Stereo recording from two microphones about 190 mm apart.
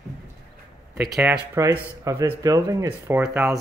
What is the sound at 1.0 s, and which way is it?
Speech, 5° right (ahead or behind).